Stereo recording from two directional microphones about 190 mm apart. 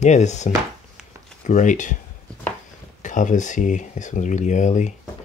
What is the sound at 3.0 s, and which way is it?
Speech, 40° left (ahead or behind).